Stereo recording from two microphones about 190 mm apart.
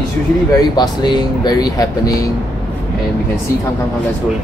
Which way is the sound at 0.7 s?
20° left (ahead or behind).